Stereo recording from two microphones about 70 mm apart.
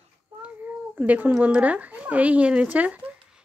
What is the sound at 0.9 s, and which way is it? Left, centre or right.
Speech, right.